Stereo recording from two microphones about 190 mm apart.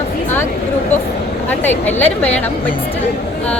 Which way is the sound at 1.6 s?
10° left (ahead or behind).